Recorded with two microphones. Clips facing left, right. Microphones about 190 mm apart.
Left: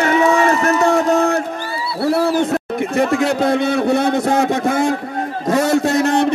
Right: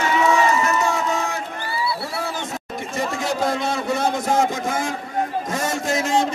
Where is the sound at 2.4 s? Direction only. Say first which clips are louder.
Left 12 dB; 60° left (ahead or behind).